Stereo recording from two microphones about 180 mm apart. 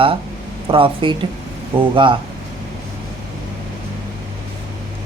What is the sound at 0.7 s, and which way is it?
Speech, 30° right (ahead or behind).